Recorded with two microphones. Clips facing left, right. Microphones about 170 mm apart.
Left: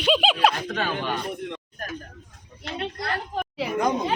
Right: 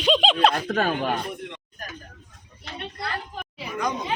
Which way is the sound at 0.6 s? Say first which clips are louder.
Right 4 dB; 45° right (ahead or behind).